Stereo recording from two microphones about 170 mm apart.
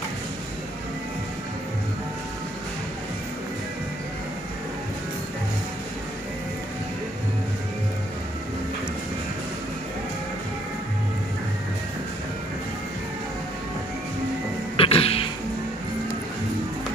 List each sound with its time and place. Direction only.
14.8 s music: 35° left (ahead or behind)